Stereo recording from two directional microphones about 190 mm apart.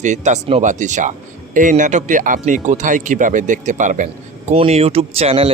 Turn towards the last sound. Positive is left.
turn(degrees=-30)  # may be behind; listen again after turning